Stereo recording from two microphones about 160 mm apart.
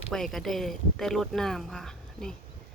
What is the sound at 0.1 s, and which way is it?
Speech, centre (ahead or behind).